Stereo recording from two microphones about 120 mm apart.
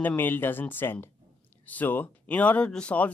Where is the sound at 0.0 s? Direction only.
15° left (ahead or behind).